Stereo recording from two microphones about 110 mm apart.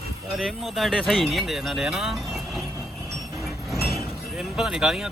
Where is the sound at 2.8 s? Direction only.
Centre (ahead or behind).